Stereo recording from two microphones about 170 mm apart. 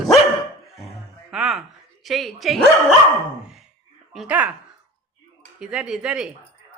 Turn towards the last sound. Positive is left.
turn(degrees=-5)  # may be behind; listen again after turning